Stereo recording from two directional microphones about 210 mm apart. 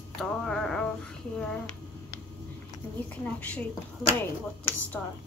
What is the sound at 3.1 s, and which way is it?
Speech, 5° left (ahead or behind).